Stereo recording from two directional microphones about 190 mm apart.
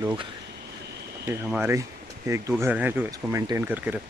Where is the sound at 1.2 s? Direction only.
10° right (ahead or behind).